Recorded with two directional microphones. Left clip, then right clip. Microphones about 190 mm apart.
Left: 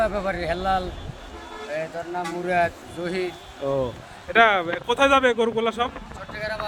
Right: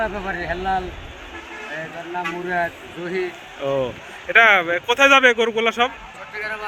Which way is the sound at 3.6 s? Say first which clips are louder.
Right 3 dB; 5° left (ahead or behind).